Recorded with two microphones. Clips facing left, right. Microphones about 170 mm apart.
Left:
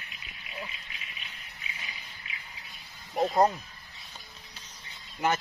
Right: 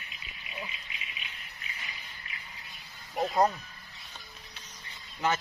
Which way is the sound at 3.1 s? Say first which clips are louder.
Left 2 dB; 15° left (ahead or behind).